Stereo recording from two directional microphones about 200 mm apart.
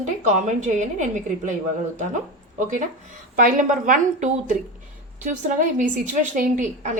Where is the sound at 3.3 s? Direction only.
45° right (ahead or behind).